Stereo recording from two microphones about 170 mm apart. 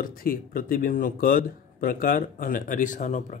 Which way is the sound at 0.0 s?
60° left (ahead or behind).